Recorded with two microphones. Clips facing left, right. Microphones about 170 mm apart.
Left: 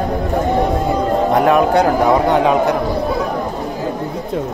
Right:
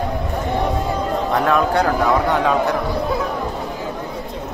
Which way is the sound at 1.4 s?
15° left (ahead or behind).